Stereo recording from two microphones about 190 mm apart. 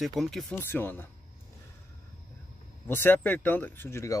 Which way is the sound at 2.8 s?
10° left (ahead or behind).